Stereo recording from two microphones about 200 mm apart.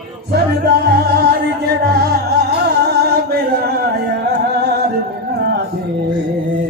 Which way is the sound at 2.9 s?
55° right (ahead or behind).